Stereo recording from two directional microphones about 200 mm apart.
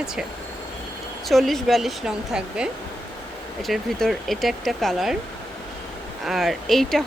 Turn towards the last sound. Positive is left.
turn(degrees=0)  # may be behind; listen again after turning